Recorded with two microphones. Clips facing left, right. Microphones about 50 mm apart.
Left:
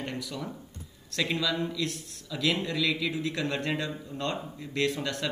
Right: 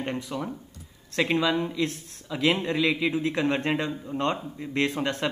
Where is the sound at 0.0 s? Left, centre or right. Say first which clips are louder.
Right 5 dB; right.